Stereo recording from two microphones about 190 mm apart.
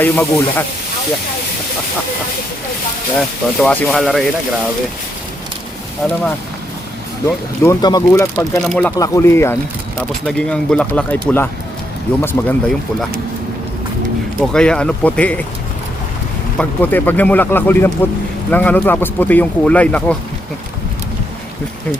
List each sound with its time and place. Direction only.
0.0 s speech: 10° left (ahead or behind)
3.2 s speech: 5° left (ahead or behind)
6.0 s speech: centre (ahead or behind)
7.3 s speech: 15° left (ahead or behind)
8.6 s speech: 5° left (ahead or behind)
9.0 s speech: 15° left (ahead or behind)
14.5 s speech: 5° left (ahead or behind)
16.6 s speech: 10° left (ahead or behind)